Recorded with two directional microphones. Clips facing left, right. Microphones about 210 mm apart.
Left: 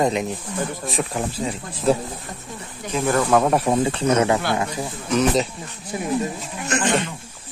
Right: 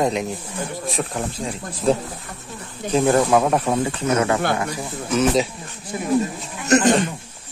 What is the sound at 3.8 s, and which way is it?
Speech, 25° left (ahead or behind).